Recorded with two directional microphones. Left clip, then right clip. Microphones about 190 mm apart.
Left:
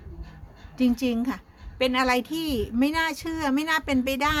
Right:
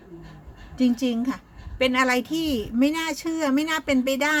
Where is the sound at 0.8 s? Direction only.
25° left (ahead or behind).